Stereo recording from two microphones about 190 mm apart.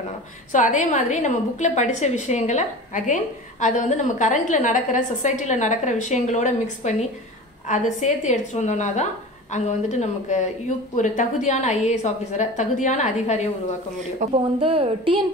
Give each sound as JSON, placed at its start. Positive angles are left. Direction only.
{"t": 0.5, "sound": "a woman's voice", "side_deg": 40}
{"t": 14.2, "sound": "a woman's voice", "side_deg": -30}